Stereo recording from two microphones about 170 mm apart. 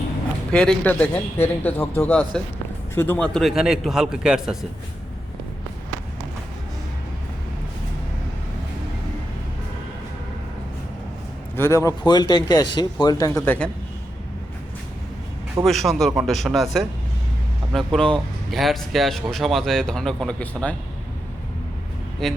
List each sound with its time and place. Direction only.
0.5 s a man's voice: 5° left (ahead or behind)
11.5 s speech: 15° left (ahead or behind)
15.6 s speech: centre (ahead or behind)
17.7 s speech: centre (ahead or behind)
22.2 s speech: centre (ahead or behind)